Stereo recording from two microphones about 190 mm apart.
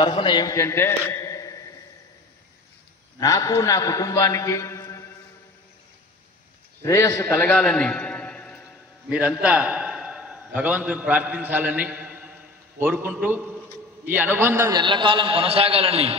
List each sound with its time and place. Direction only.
0.0 s a man's voice: 25° left (ahead or behind)
3.2 s a man's voice: 20° left (ahead or behind)
6.8 s a man's voice: 15° left (ahead or behind)
9.1 s a man's voice: 5° right (ahead or behind)
14.8 s a man's voice: 25° right (ahead or behind)